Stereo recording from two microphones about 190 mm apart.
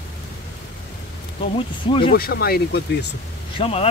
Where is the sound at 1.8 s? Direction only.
30° left (ahead or behind).